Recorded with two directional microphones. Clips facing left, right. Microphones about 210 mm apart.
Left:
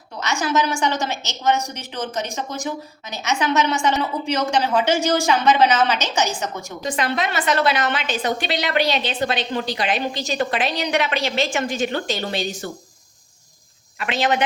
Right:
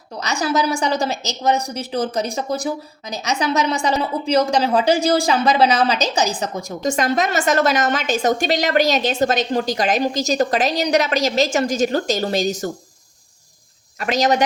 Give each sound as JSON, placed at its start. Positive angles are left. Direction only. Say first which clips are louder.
{"t": 0.2, "sound": "a woman's voice", "louder": "right 1 dB", "side_deg": -35}
{"t": 14.0, "sound": "a woman's voice", "louder": "right 4 dB", "side_deg": -40}